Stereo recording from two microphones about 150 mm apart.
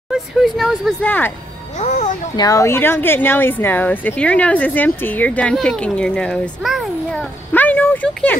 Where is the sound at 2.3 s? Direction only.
25° left (ahead or behind); by 8.4 s 5° left (ahead or behind).